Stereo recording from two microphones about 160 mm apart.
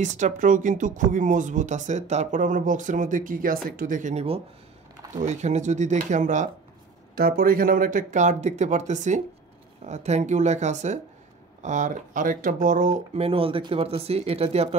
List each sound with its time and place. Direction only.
0.0 s speech: 50° right (ahead or behind)
7.2 s speech: 70° right (ahead or behind); by 14.8 s 40° right (ahead or behind)